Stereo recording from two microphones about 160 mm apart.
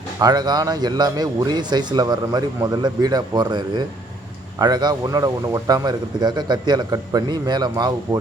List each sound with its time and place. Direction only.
0.2 s a man's voice: 25° right (ahead or behind)